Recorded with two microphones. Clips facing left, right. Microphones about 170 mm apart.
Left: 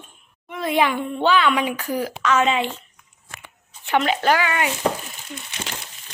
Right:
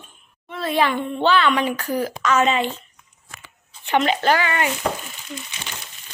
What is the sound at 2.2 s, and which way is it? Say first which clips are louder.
Speech: even; centre (ahead or behind).